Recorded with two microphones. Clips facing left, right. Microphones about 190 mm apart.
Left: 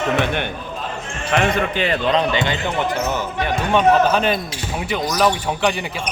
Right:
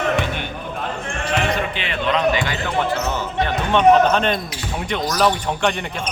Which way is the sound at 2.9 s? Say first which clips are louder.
Left 1 dB; 15° left (ahead or behind).